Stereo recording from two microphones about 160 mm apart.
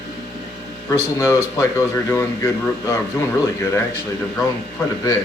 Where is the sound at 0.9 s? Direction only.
20° left (ahead or behind).